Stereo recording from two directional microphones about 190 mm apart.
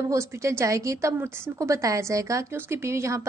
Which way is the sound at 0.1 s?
15° right (ahead or behind).